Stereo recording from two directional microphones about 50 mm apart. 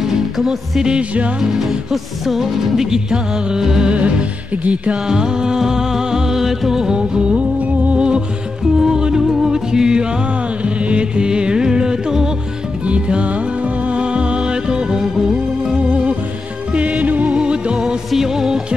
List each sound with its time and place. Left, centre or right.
0.0 s music: centre
3.9 s music: right
5.0 s music: centre
8.7 s music: centre
16.7 s music: right
17.4 s music: centre
17.7 s music: centre